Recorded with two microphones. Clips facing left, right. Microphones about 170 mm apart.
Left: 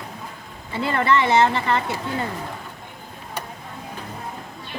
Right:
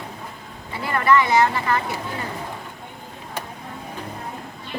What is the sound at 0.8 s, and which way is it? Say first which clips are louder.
Speech: right 1 dB; 25° left (ahead or behind).